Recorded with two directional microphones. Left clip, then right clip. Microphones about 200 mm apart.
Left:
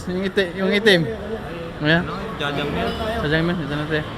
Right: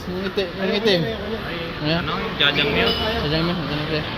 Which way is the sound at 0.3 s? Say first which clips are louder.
Left 3 dB; 35° left (ahead or behind).